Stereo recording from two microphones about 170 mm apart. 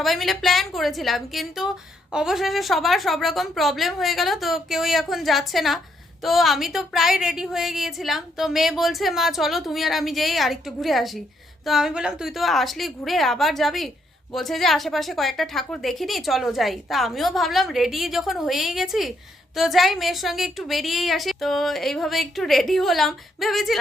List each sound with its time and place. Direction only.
0.0 s a woman's voice: centre (ahead or behind)